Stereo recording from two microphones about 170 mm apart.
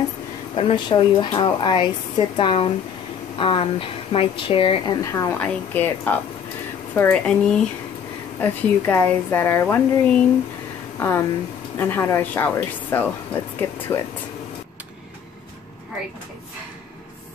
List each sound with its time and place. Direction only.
0.6 s speech: 30° left (ahead or behind)
5.0 s a woman's voice: 15° left (ahead or behind)